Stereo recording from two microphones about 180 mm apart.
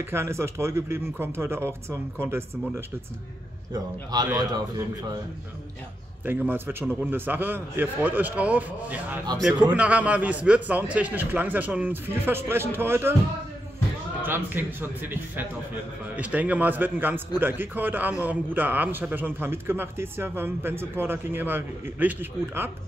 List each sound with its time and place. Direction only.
0.0 s a man's voice: 15° right (ahead or behind)
6.2 s a man's voice: 10° right (ahead or behind)
14.2 s a man's voice: 10° right (ahead or behind)